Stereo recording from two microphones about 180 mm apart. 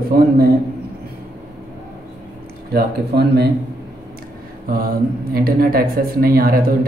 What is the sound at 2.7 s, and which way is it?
Speech, 60° right (ahead or behind).